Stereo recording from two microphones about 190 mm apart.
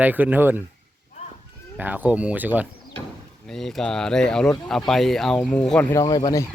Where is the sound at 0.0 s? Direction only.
10° right (ahead or behind).